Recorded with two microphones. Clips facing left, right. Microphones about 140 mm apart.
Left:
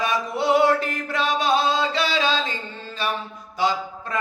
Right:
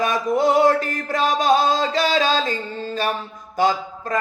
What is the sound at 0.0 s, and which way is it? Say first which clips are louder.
Music: right 5 dB; 45° right (ahead or behind).